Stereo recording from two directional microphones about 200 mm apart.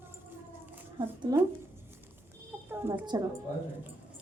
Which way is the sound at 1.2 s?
20° right (ahead or behind).